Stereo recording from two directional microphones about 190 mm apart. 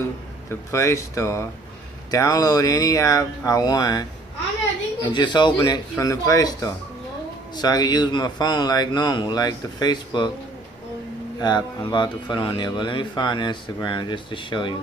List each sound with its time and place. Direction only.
0.5 s speech: 15° left (ahead or behind)
5.0 s speech: 25° left (ahead or behind)
11.3 s speech: 20° left (ahead or behind)